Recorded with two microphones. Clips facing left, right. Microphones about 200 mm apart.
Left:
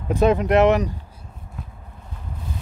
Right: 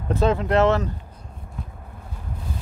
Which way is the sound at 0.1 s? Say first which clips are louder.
Left 3 dB; 15° left (ahead or behind).